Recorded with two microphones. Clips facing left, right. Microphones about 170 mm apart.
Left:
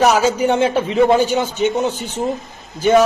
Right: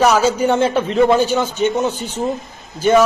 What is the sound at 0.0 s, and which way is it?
A man's voice, 10° left (ahead or behind).